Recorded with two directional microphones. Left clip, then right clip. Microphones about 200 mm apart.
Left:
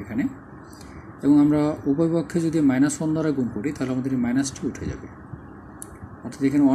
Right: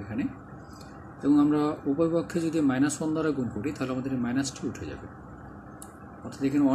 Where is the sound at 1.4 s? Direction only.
15° left (ahead or behind).